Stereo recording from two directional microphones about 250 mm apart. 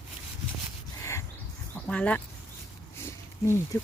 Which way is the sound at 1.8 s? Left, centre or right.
Centre.